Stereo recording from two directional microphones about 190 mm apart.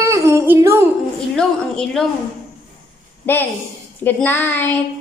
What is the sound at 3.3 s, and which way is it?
Child singing, 10° left (ahead or behind).